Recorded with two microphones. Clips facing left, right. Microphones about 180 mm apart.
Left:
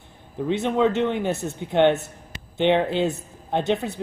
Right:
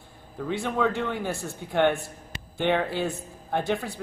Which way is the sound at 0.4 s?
20° left (ahead or behind).